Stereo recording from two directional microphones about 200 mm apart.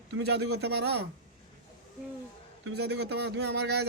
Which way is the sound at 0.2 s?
55° right (ahead or behind).